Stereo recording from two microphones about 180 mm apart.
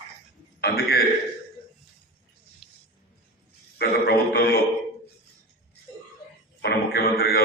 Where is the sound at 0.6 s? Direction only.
60° left (ahead or behind).